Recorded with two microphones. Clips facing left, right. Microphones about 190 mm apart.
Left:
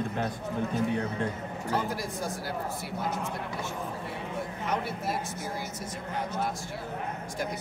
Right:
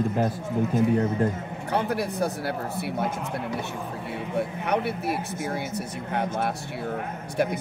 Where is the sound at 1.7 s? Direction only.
65° right (ahead or behind).